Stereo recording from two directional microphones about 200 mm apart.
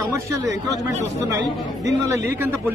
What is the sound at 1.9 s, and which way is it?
Speech, 15° right (ahead or behind).